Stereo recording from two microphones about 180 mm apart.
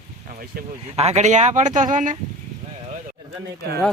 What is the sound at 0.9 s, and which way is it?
Speech, 35° right (ahead or behind).